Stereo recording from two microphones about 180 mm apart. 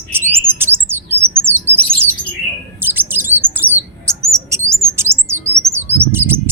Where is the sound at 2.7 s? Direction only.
10° right (ahead or behind).